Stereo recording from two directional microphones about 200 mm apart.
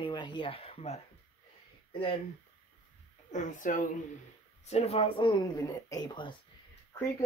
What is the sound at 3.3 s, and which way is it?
Speech, 40° left (ahead or behind).